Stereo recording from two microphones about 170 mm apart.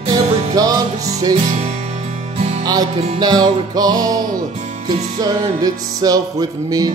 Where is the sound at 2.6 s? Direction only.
20° right (ahead or behind).